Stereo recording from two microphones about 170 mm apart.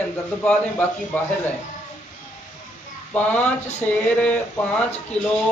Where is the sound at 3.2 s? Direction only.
10° left (ahead or behind).